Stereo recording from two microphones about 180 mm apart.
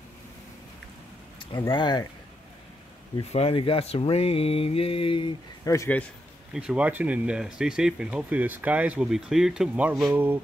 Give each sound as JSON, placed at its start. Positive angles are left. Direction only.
{"t": 1.7, "sound": "speech", "side_deg": 25}
{"t": 3.3, "sound": "speech", "side_deg": 30}
{"t": 5.6, "sound": "speech", "side_deg": 15}
{"t": 6.5, "sound": "speech", "side_deg": -5}